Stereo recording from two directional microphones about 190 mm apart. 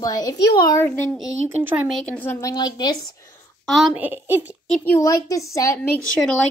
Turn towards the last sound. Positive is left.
turn(degrees=5)  # may be behind; listen again after turning